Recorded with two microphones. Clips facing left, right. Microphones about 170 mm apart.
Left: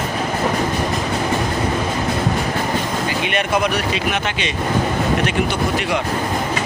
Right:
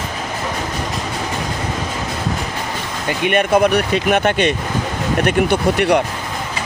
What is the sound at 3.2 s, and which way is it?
Speech, 50° right (ahead or behind).